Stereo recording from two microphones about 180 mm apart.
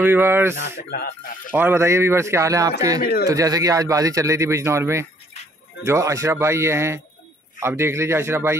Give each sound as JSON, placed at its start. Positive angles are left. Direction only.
{"t": 0.0, "sound": "speech", "side_deg": -10}
{"t": 0.8, "sound": "speech", "side_deg": 60}
{"t": 1.5, "sound": "speech", "side_deg": -10}
{"t": 3.0, "sound": "speech", "side_deg": 60}
{"t": 3.3, "sound": "speech", "side_deg": -20}